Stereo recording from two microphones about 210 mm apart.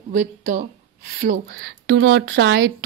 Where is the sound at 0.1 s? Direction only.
35° right (ahead or behind).